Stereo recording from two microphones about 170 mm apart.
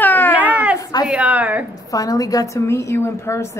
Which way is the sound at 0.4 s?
10° right (ahead or behind).